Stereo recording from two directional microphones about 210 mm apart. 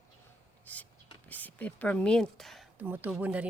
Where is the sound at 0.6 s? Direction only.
5° left (ahead or behind).